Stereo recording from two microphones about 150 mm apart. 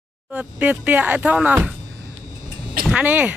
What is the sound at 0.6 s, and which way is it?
Speech, 10° right (ahead or behind).